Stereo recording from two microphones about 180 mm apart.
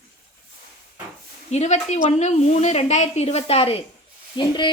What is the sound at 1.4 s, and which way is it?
A woman's voice, 40° left (ahead or behind).